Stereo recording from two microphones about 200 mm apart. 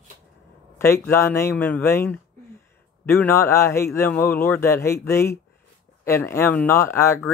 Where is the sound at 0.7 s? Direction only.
15° left (ahead or behind).